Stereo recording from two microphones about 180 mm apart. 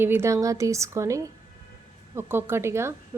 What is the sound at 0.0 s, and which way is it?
A woman's voice, 15° right (ahead or behind).